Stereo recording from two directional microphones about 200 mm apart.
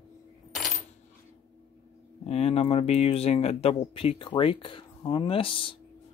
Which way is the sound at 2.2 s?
30° left (ahead or behind).